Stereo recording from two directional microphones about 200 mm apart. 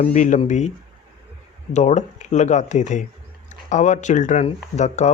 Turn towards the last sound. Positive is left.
turn(degrees=35)  # may be behind; listen again after turning